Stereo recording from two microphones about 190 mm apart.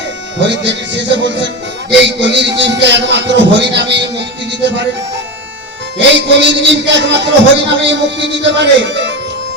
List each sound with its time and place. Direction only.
0.3 s a man's voice: 70° right (ahead or behind)
6.1 s a man's voice: 70° right (ahead or behind)